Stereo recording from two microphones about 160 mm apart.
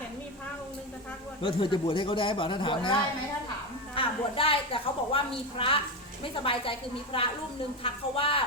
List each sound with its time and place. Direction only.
1.4 s a woman's voice: 30° left (ahead or behind)